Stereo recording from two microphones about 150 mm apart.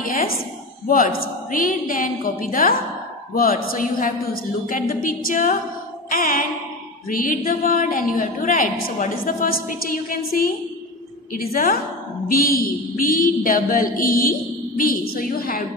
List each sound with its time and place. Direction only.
0.0 s a woman's voice: 65° left (ahead or behind)
11.5 s a woman's voice: 75° left (ahead or behind)